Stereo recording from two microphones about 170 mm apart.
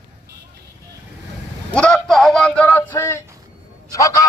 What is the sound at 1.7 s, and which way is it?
A man's voice, 5° left (ahead or behind).